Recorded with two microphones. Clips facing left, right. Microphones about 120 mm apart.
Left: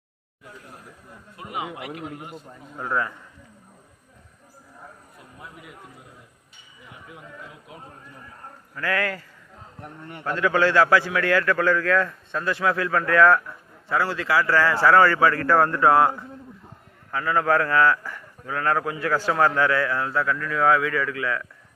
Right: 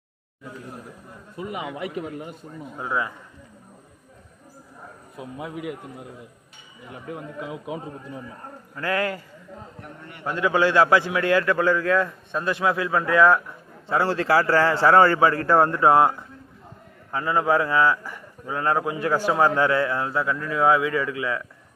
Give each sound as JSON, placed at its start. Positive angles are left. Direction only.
{"t": 2.7, "sound": "a man's voice", "side_deg": -15}
{"t": 5.1, "sound": "a man's voice", "side_deg": -90}
{"t": 6.9, "sound": "speech", "side_deg": -50}
{"t": 7.3, "sound": "a man's voice", "side_deg": -90}
{"t": 8.7, "sound": "a man's voice", "side_deg": -25}
{"t": 10.2, "sound": "a man's voice", "side_deg": -15}
{"t": 13.8, "sound": "a man's voice", "side_deg": -30}